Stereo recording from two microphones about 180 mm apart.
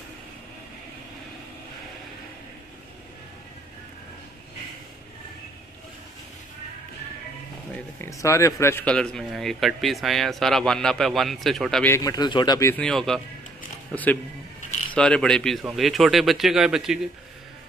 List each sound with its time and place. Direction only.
7.7 s speech: 15° left (ahead or behind)
11.9 s speech: 20° left (ahead or behind)
12.8 s speech: 5° left (ahead or behind)
14.9 s speech: 5° left (ahead or behind)